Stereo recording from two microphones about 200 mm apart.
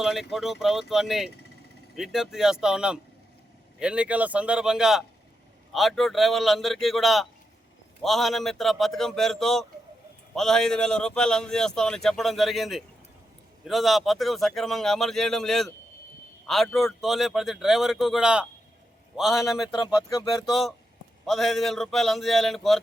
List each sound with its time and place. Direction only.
0.0 s a man's voice: centre (ahead or behind)